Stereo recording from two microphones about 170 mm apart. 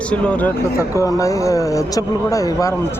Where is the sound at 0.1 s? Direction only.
5° left (ahead or behind).